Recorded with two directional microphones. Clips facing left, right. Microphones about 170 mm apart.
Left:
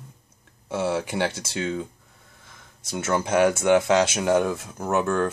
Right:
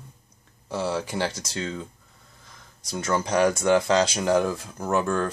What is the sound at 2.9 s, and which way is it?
Speech, 5° left (ahead or behind).